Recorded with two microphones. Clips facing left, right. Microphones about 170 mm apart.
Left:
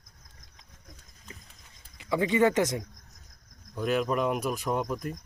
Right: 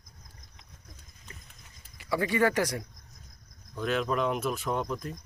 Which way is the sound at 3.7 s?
10° left (ahead or behind).